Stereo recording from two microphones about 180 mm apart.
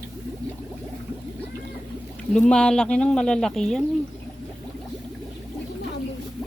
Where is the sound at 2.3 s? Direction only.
5° left (ahead or behind).